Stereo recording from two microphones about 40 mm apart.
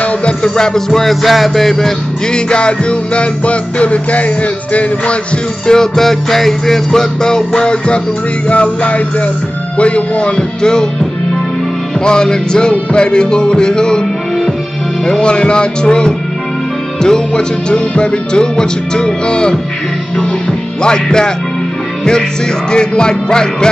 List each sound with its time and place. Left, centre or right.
0.0 s music: left
0.6 s music: centre
2.3 s music: left
5.7 s music: centre
8.5 s music: left; by 10.9 s centre
12.0 s music: centre
15.0 s music: left
20.8 s music: centre
22.7 s music: left